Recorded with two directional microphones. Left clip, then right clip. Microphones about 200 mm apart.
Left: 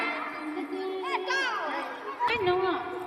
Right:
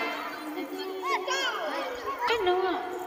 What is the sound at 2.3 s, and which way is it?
Speech, 10° left (ahead or behind).